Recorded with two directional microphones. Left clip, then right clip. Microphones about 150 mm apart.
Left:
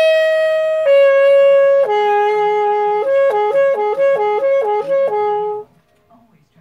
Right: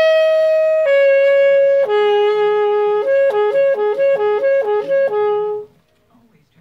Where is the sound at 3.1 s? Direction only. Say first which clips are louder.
Left 1 dB; 5° right (ahead or behind).